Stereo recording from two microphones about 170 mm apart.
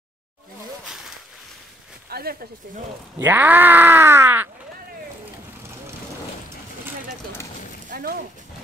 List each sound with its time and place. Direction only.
2.0 s speech: 65° right (ahead or behind)
3.2 s speech: 10° right (ahead or behind)
7.9 s speech: 60° right (ahead or behind)